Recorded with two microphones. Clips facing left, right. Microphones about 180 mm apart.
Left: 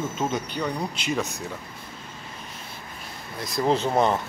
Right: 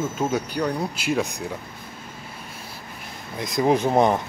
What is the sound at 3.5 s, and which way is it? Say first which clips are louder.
Speech: right 3 dB; 15° right (ahead or behind).